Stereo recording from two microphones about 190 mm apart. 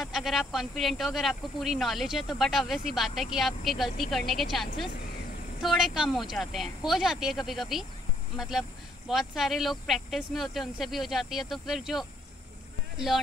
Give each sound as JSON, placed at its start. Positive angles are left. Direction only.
{"t": 0.0, "sound": "speech", "side_deg": 0}